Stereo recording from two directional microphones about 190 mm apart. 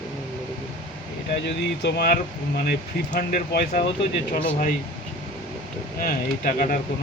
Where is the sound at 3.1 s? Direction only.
50° left (ahead or behind).